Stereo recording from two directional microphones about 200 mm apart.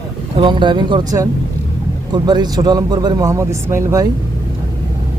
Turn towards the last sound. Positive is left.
turn(degrees=-15)  # may be behind; listen again after turning